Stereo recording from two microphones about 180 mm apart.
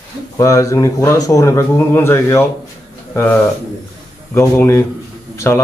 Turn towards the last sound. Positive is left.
turn(degrees=15)  # may be behind; listen again after turning